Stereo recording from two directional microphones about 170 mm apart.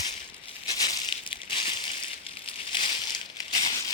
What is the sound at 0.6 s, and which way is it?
Crushing, 25° left (ahead or behind).